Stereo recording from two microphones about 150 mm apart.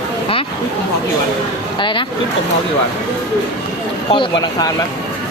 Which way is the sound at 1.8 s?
35° left (ahead or behind).